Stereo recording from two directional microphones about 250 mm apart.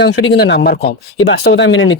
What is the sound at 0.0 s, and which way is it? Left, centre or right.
Speech, left.